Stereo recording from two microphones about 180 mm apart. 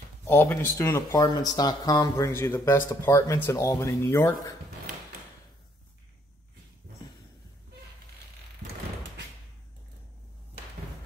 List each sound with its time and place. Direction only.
0.3 s speech: 10° left (ahead or behind)